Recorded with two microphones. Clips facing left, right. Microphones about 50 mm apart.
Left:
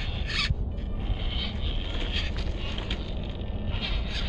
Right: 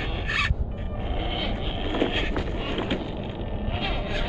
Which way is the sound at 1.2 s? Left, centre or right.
Right.